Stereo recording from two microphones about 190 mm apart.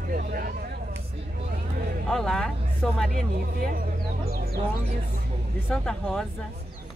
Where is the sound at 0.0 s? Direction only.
50° right (ahead or behind).